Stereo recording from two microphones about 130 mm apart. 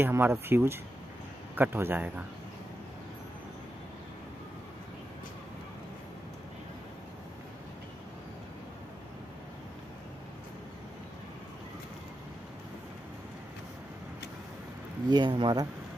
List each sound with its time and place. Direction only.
0.0 s a man's voice: 20° right (ahead or behind)
15.0 s speech: 35° right (ahead or behind)